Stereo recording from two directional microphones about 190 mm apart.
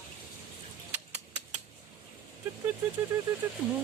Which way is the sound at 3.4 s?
10° right (ahead or behind).